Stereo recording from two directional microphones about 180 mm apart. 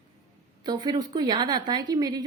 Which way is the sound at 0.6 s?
25° right (ahead or behind).